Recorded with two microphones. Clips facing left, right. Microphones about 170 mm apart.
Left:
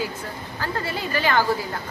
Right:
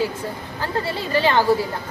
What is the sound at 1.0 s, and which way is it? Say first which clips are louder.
Speech: right 3 dB; 25° right (ahead or behind).